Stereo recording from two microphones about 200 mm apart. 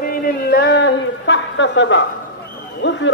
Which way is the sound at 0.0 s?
50° left (ahead or behind).